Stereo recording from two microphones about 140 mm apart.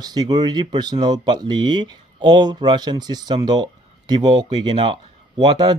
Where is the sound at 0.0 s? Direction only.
30° right (ahead or behind).